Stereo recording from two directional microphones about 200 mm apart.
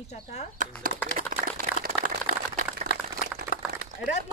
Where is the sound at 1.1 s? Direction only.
45° right (ahead or behind).